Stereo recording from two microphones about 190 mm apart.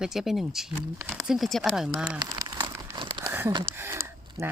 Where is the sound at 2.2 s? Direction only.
20° right (ahead or behind).